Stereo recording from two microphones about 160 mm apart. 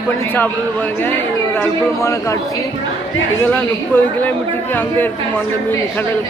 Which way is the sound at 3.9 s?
15° left (ahead or behind).